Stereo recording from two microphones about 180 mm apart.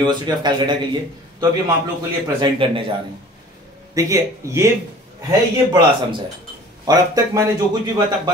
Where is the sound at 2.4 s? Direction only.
30° right (ahead or behind).